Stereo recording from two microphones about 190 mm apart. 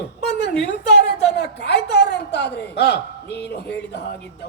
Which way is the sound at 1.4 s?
60° left (ahead or behind).